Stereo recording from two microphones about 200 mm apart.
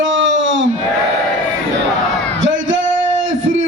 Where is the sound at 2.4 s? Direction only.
70° right (ahead or behind).